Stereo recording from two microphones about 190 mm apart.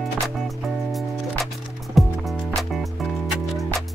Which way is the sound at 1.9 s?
Centre (ahead or behind).